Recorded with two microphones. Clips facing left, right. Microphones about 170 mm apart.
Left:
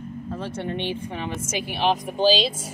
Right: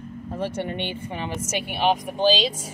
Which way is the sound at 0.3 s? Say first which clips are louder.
Right 3 dB; 10° right (ahead or behind).